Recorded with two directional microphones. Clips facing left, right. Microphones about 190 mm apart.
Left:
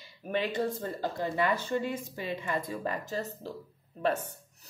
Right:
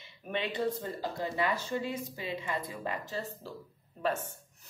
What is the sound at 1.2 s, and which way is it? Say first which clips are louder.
A woman's voice: left 3 dB; 50° left (ahead or behind).